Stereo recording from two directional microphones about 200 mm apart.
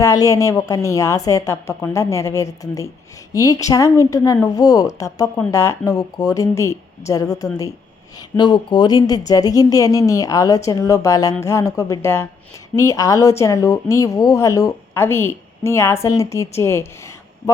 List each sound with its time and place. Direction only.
0.0 s speech: 15° left (ahead or behind)
8.4 s speech: 20° left (ahead or behind)